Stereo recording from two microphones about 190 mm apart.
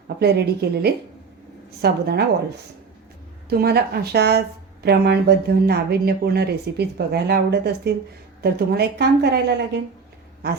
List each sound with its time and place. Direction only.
0.2 s speech: 60° right (ahead or behind)
3.5 s speech: 55° right (ahead or behind)